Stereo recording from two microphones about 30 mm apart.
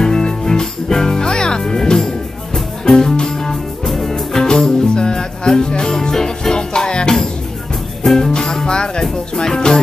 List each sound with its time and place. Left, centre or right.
0.0 s music: left
4.1 s music: left
5.9 s music: centre
8.6 s music: left